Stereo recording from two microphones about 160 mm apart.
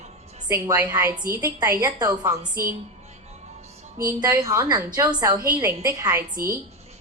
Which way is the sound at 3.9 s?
20° right (ahead or behind).